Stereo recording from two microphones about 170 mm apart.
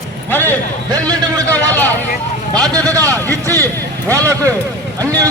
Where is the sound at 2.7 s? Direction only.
20° right (ahead or behind).